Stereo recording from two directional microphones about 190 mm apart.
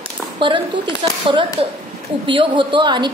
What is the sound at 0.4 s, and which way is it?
A woman's voice, 25° right (ahead or behind).